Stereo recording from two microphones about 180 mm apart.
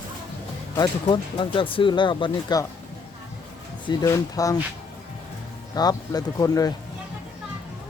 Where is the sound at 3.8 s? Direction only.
20° left (ahead or behind).